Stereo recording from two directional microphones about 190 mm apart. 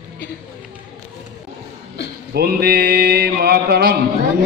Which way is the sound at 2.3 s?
55° right (ahead or behind).